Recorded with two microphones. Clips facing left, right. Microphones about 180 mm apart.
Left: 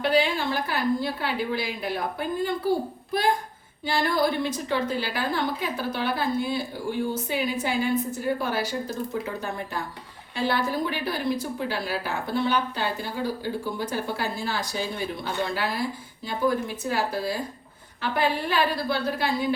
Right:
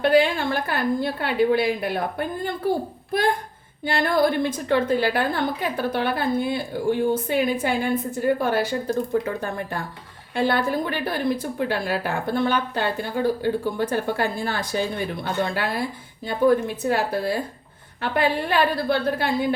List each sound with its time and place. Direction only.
0.0 s a woman's voice: 55° right (ahead or behind)
3.8 s a woman's voice: 55° right (ahead or behind)
10.3 s a woman's voice: 55° right (ahead or behind)